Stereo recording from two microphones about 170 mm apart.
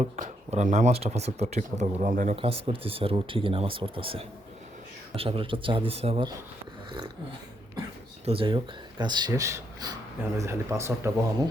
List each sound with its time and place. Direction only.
0.0 s speech: 45° right (ahead or behind)
2.0 s speech: 50° right (ahead or behind)
2.3 s speech: 35° right (ahead or behind)
8.2 s speech: 35° right (ahead or behind); by 11.1 s 15° right (ahead or behind)